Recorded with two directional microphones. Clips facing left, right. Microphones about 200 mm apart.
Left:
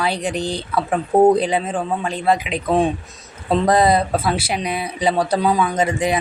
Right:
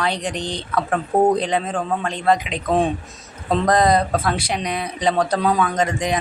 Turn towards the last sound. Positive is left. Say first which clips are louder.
# left 2 dB
turn(degrees=10)  # may be behind; listen again after turning